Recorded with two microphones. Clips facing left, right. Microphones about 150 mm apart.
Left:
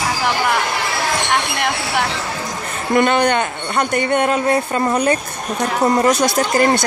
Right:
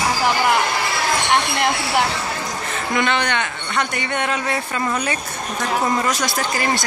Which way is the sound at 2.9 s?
45° left (ahead or behind).